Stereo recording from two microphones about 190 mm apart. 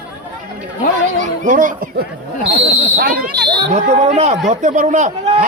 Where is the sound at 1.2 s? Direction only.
45° right (ahead or behind).